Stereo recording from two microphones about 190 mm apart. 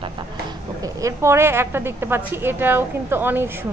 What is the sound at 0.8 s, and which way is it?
A woman's voice, 15° right (ahead or behind).